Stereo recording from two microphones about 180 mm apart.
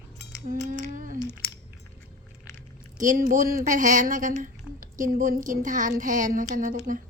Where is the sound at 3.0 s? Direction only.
50° right (ahead or behind).